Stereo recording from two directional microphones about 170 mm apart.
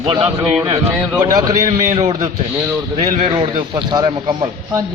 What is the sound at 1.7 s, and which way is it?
A man's voice, 40° right (ahead or behind).